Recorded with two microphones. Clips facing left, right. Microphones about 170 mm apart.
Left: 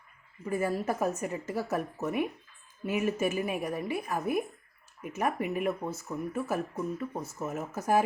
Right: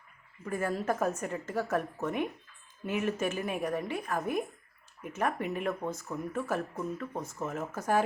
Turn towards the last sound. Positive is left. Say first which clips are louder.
# left 2 dB
turn(degrees=10)  # may be behind; listen again after turning